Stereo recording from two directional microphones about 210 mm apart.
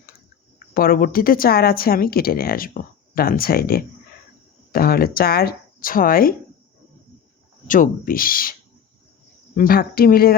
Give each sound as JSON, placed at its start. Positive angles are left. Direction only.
{"t": 0.7, "sound": "speech", "side_deg": 45}
{"t": 7.7, "sound": "speech", "side_deg": 40}
{"t": 9.6, "sound": "speech", "side_deg": 45}